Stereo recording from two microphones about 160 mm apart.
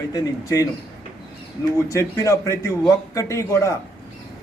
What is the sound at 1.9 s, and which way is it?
A man's voice, 20° left (ahead or behind).